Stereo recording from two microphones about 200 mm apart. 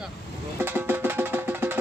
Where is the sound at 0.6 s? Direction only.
10° right (ahead or behind).